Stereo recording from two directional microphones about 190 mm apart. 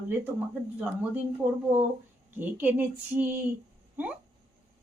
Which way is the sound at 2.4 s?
10° right (ahead or behind).